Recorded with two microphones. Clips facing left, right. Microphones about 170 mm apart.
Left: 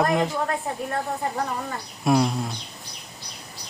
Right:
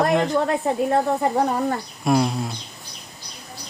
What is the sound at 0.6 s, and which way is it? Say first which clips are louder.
Speech: right 8 dB; 75° right (ahead or behind).